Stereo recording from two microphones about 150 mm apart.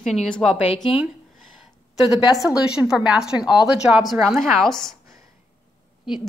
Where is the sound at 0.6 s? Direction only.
40° left (ahead or behind).